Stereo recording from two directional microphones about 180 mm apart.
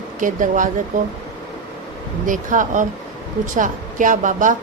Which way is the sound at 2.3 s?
45° right (ahead or behind).